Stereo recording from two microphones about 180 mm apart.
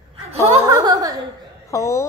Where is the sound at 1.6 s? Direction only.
15° left (ahead or behind).